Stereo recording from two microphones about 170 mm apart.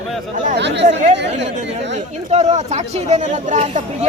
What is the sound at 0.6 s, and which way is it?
Speech, 90° right.